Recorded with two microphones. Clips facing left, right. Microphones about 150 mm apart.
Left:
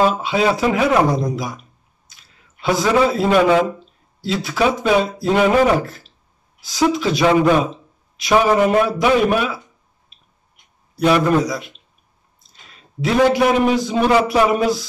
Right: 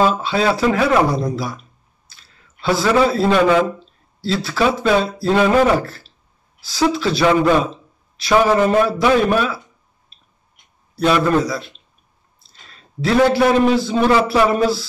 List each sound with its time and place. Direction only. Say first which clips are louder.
0.0 s speech: even; 15° left (ahead or behind)
2.6 s speech: even; 15° left (ahead or behind)
11.0 s a man's voice: left 1 dB; 15° left (ahead or behind)